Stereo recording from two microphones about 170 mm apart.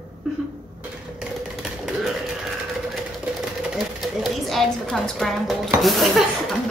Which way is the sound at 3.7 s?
Centre (ahead or behind).